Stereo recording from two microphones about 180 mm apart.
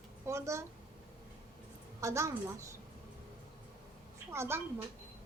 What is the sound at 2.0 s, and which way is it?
Speech, 15° right (ahead or behind).